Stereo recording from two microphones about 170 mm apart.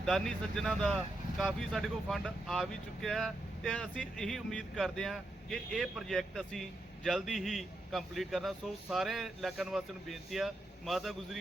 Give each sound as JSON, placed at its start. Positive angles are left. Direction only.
{"t": 0.0, "sound": "speech", "side_deg": 5}